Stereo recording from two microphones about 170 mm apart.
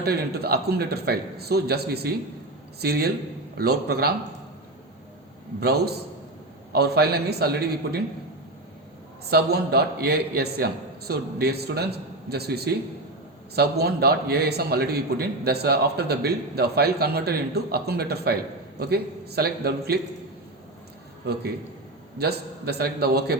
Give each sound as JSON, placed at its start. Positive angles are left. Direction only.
{"t": 0.0, "sound": "a man's voice", "side_deg": -65}
{"t": 5.5, "sound": "a man's voice", "side_deg": -70}
{"t": 9.3, "sound": "a man's voice", "side_deg": -70}
{"t": 22.2, "sound": "a man's voice", "side_deg": -70}